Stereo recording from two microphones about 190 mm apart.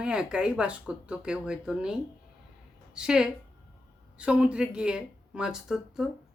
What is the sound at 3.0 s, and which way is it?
Speech, 5° right (ahead or behind).